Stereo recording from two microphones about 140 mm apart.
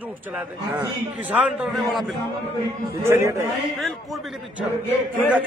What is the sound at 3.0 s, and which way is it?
Speech, 20° right (ahead or behind).